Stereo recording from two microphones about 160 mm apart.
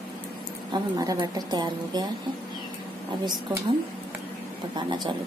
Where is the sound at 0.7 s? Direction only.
25° right (ahead or behind).